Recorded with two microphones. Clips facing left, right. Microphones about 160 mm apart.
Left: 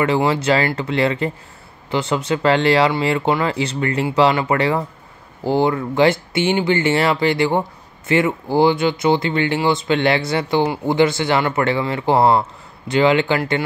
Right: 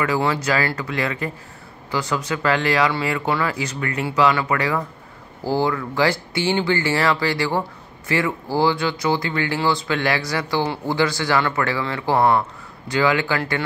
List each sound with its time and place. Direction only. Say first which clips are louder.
0.2 s speech: left 4 dB; 25° left (ahead or behind)